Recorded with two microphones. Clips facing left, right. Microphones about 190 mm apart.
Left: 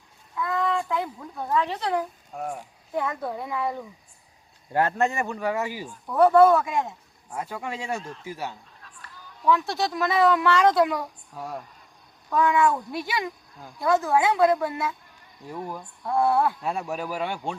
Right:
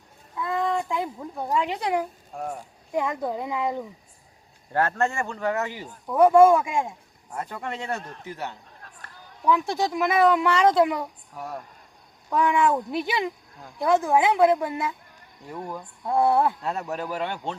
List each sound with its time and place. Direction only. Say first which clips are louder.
0.3 s a sound: even; 20° right (ahead or behind)
2.3 s speech: left 1 dB; centre (ahead or behind)
2.9 s speech: right 2 dB; 15° right (ahead or behind)
4.7 s speech: left 1 dB; 15° left (ahead or behind)
6.1 s speech: right 1 dB; 10° right (ahead or behind)
7.3 s speech: even; 10° left (ahead or behind)
8.8 s a sound: right 3 dB; 50° right (ahead or behind)
9.5 s a child's voice: even; 15° right (ahead or behind)
12.3 s a child's voice: even; 15° right (ahead or behind)
15.5 s speech: even; 5° left (ahead or behind)
16.0 s speech: right 1 dB; 20° right (ahead or behind)
16.6 s speech: even; 10° left (ahead or behind)